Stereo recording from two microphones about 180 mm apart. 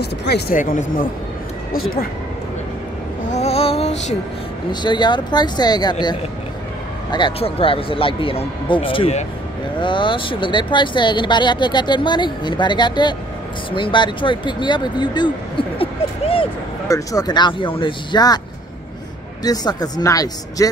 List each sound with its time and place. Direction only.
0.0 s speech: 65° left (ahead or behind)
0.6 s speech: 50° left (ahead or behind)
3.3 s a sound: 35° left (ahead or behind)
4.6 s speech: 25° left (ahead or behind)
16.8 s speech: 20° left (ahead or behind)
19.4 s speech: 20° left (ahead or behind)